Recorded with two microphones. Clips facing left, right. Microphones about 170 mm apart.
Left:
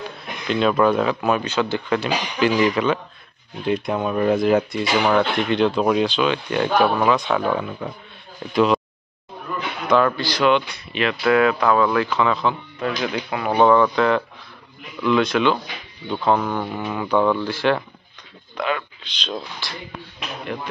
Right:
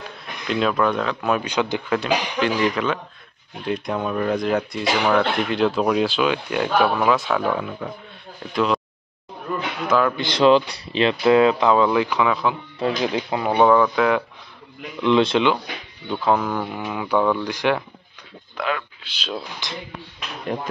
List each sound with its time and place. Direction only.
0.5 s speech: centre (ahead or behind)
1.4 s speech: 15° right (ahead or behind)
1.9 s speech: 5° left (ahead or behind)
8.5 s a sound: centre (ahead or behind)
9.8 s speech: 5° right (ahead or behind)
10.1 s speech: 25° right (ahead or behind); by 12.5 s 10° right (ahead or behind)
12.7 s speech: 30° right (ahead or behind)
13.6 s speech: 10° right (ahead or behind)
15.0 s speech: 25° right (ahead or behind)
16.1 s speech: 5° right (ahead or behind)
18.6 s speech: centre (ahead or behind)
19.6 s speech: 20° right (ahead or behind)